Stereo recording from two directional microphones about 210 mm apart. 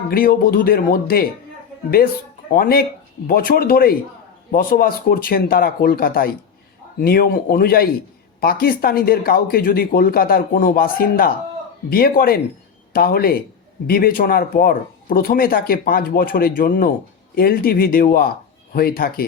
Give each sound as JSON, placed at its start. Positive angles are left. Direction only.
{"t": 0.1, "sound": "speech", "side_deg": 45}
{"t": 2.5, "sound": "speech", "side_deg": 45}